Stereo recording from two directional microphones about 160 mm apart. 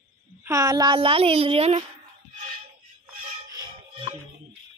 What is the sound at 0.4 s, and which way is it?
A woman's voice, 20° right (ahead or behind).